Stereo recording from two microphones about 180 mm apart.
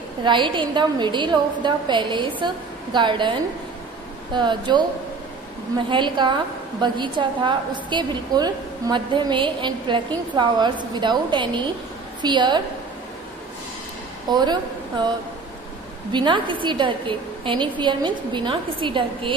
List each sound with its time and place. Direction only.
0.2 s a woman's voice: 25° right (ahead or behind)
5.9 s a woman's voice: 25° right (ahead or behind)
14.3 s a woman's voice: 25° right (ahead or behind)
16.1 s a woman's voice: 25° right (ahead or behind)